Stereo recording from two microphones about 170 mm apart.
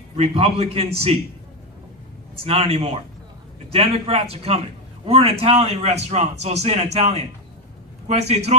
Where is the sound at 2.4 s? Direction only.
35° right (ahead or behind).